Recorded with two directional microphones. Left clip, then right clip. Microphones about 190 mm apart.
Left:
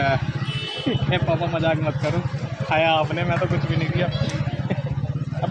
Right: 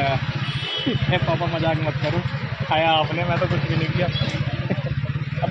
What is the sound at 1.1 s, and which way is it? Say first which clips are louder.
A man's voice: even; 5° right (ahead or behind).